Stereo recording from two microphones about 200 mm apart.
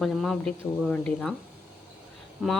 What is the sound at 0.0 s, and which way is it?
Speech, centre (ahead or behind).